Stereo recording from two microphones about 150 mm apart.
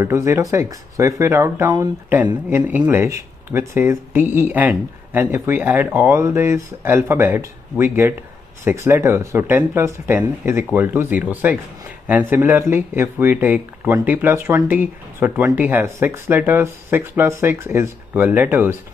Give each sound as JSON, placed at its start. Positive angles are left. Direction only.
{"t": 0.0, "sound": "speech", "side_deg": -20}